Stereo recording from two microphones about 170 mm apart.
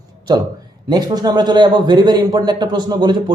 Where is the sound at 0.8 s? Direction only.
25° right (ahead or behind).